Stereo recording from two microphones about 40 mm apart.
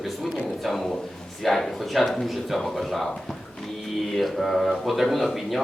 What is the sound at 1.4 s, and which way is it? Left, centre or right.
Speech, centre.